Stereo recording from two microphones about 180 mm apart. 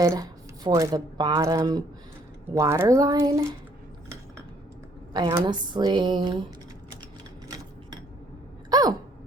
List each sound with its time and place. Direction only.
0.0 s speech: 20° right (ahead or behind)
5.1 s speech: 25° right (ahead or behind)
8.7 s a sound: 20° right (ahead or behind)